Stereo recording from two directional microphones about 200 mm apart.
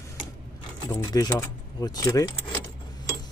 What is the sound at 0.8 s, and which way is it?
Speech, 20° left (ahead or behind).